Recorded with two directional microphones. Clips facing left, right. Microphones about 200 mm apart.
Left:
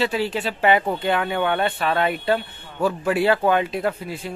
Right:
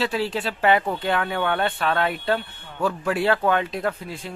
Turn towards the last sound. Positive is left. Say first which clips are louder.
# left 2 dB
turn(degrees=5)  # may be behind; listen again after turning